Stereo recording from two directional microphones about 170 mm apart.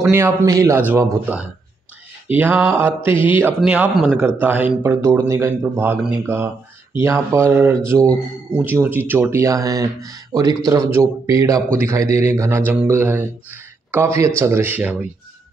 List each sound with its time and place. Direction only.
0.1 s a man's voice: 15° right (ahead or behind)
2.3 s a man's voice: 10° right (ahead or behind)